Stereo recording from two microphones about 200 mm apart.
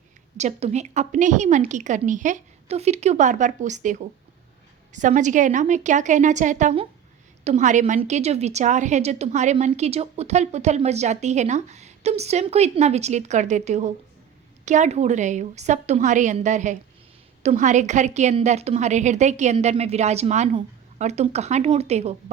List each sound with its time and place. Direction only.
0.3 s a woman's voice: 35° right (ahead or behind)